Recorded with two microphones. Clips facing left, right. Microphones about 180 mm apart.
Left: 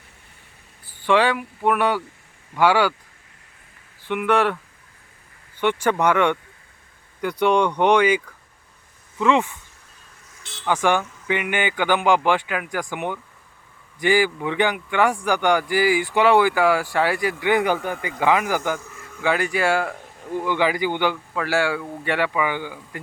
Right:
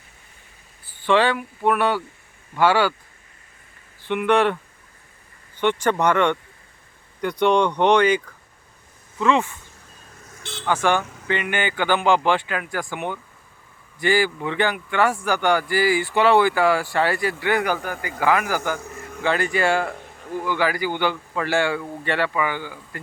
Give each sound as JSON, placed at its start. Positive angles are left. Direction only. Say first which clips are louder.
{"t": 1.0, "sound": "a man's voice", "louder": "even", "side_deg": 10}
{"t": 4.0, "sound": "speech", "louder": "right 1 dB", "side_deg": 5}
{"t": 5.5, "sound": "a man's voice", "louder": "even", "side_deg": 10}
{"t": 10.7, "sound": "a man's voice", "louder": "even", "side_deg": 15}
{"t": 20.4, "sound": "a man's voice", "louder": "left 1 dB", "side_deg": 20}
{"t": 21.3, "sound": "a man's voice", "louder": "even", "side_deg": 5}